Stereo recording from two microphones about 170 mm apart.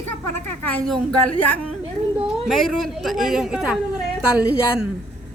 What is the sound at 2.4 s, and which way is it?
A woman's voice, centre (ahead or behind).